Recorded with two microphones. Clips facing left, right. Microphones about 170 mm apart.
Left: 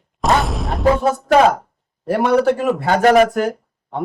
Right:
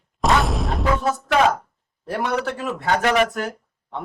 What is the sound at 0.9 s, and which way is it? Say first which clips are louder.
Speech: left 8 dB; 35° left (ahead or behind).